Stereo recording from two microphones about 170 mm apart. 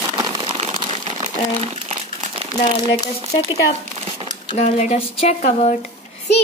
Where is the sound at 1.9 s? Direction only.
35° right (ahead or behind).